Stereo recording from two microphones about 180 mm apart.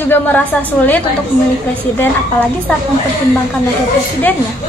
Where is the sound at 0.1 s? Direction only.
10° left (ahead or behind).